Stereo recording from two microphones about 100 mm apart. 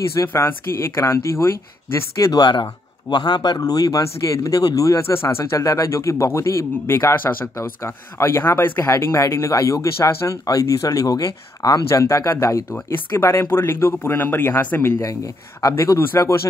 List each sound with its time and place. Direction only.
0.1 s speech: 30° left (ahead or behind)
2.3 s speech: 45° left (ahead or behind); by 15.0 s 20° left (ahead or behind)
15.0 s speech: 35° left (ahead or behind)